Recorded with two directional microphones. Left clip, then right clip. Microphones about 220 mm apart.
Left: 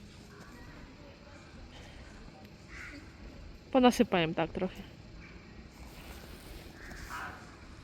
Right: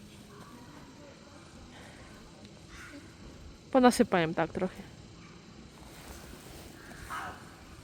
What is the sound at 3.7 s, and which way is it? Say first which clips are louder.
Speech: right 2 dB; 5° right (ahead or behind).